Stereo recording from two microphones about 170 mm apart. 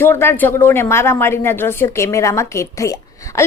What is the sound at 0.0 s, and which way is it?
A woman's voice, 15° left (ahead or behind).